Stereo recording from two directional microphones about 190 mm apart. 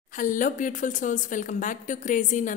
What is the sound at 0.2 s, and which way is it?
A woman's voice, 45° left (ahead or behind).